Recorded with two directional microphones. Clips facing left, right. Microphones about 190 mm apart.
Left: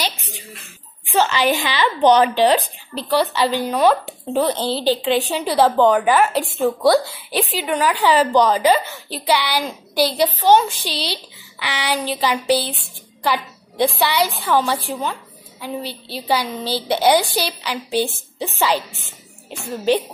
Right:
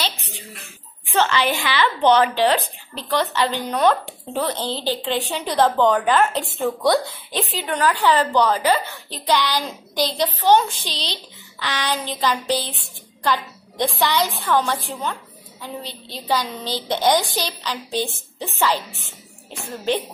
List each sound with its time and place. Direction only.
1.1 s a woman's voice: 15° left (ahead or behind)
13.2 s a sound: 10° left (ahead or behind)
13.9 s a woman's voice: 10° left (ahead or behind)